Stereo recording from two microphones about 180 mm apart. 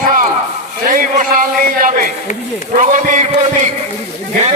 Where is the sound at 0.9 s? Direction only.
50° right (ahead or behind).